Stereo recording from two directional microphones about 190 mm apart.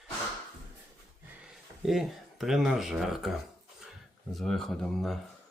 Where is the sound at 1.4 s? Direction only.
Centre (ahead or behind).